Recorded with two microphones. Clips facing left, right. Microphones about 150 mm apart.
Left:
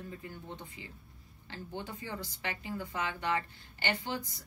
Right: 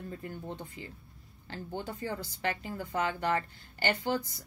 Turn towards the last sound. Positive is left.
turn(degrees=-40)  # may be behind; listen again after turning